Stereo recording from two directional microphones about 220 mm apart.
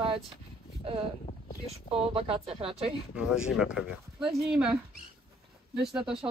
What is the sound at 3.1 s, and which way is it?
Speech, 5° right (ahead or behind).